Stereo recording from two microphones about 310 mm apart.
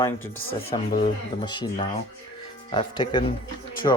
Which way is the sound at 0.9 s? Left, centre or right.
Centre.